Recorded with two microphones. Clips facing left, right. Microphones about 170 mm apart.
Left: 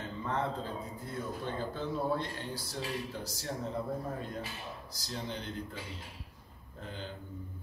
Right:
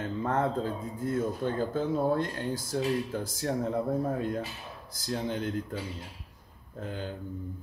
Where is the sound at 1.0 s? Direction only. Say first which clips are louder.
Right 11 dB; 50° right (ahead or behind).